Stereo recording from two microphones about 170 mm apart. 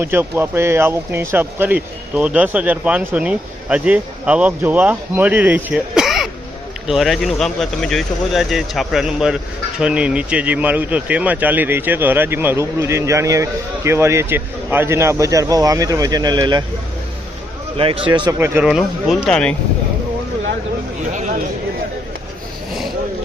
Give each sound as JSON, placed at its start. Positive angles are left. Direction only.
{"t": 0.0, "sound": "speech", "side_deg": -15}
{"t": 17.7, "sound": "speech", "side_deg": -35}
{"t": 18.3, "sound": "speech", "side_deg": -15}
{"t": 21.1, "sound": "a sound", "side_deg": -45}